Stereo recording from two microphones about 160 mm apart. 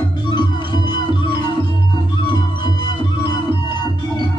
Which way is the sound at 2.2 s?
30° left (ahead or behind).